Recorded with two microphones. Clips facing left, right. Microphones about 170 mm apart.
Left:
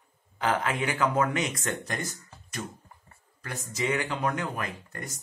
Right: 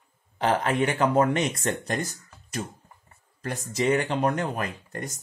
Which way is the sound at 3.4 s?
35° right (ahead or behind).